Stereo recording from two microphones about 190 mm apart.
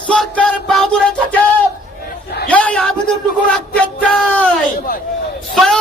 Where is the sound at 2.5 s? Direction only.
5° left (ahead or behind).